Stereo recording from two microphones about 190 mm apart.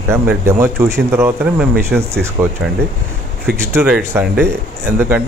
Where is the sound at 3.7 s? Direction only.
10° right (ahead or behind).